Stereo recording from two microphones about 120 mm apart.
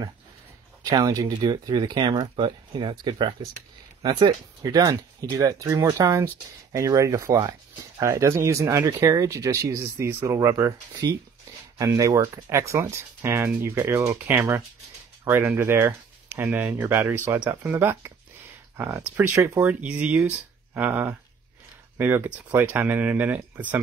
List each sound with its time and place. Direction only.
0.8 s speech: 30° right (ahead or behind); by 23.8 s 15° right (ahead or behind)